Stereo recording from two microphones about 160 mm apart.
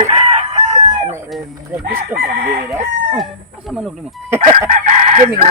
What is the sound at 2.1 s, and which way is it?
Chicken, 65° right (ahead or behind).